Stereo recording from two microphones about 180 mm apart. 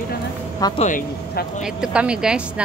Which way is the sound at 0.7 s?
45° left (ahead or behind).